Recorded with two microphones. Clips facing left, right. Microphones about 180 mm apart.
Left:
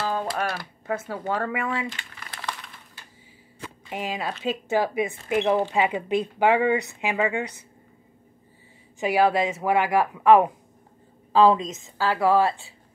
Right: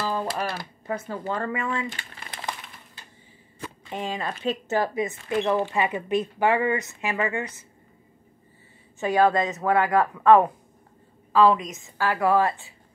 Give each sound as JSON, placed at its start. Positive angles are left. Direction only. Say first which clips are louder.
{"t": 0.2, "sound": "music", "louder": "left 1 dB", "side_deg": 0}
{"t": 0.8, "sound": "speech", "louder": "left 1 dB", "side_deg": 5}
{"t": 2.1, "sound": "crumpling", "louder": "even", "side_deg": -25}
{"t": 3.9, "sound": "speech", "louder": "left 1 dB", "side_deg": 10}
{"t": 9.0, "sound": "speech", "louder": "even", "side_deg": 10}
{"t": 11.3, "sound": "a woman's voice", "louder": "left 1 dB", "side_deg": 25}